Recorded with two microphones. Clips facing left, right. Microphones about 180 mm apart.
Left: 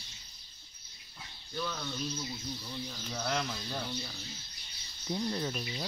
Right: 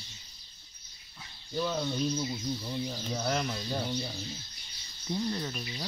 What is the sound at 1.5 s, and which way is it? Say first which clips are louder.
Speech: right 7 dB; 20° right (ahead or behind).